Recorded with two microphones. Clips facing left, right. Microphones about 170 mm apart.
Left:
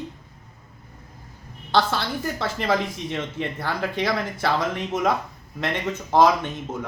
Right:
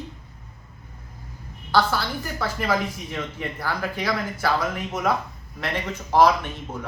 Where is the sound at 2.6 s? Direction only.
25° left (ahead or behind).